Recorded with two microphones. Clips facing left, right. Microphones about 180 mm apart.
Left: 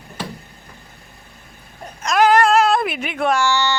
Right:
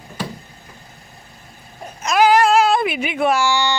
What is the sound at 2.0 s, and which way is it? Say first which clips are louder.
Speech: even; 5° right (ahead or behind).